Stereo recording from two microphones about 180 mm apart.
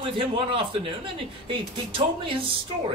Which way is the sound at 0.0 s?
30° right (ahead or behind).